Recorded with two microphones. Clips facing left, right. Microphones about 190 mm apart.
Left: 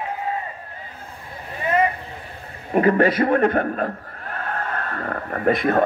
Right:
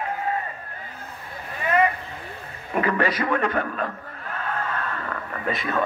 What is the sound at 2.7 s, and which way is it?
A man's voice, 40° left (ahead or behind).